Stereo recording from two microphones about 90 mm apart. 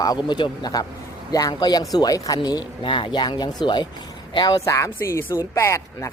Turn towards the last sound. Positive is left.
turn(degrees=35)  # may be behind; listen again after turning